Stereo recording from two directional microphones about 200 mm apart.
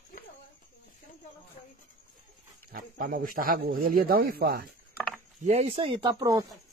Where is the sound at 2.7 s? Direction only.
45° right (ahead or behind).